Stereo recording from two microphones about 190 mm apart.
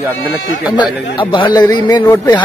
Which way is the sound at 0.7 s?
25° left (ahead or behind).